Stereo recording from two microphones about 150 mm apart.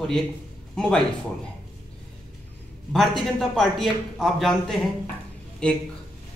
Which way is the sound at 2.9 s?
Centre (ahead or behind).